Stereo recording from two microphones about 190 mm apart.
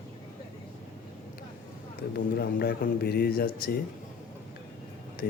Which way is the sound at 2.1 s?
55° left (ahead or behind).